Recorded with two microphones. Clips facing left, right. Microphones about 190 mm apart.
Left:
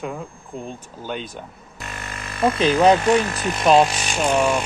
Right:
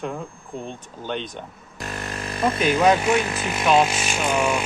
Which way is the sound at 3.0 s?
5° right (ahead or behind).